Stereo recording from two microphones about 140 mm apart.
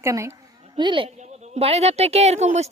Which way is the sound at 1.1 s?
55° right (ahead or behind).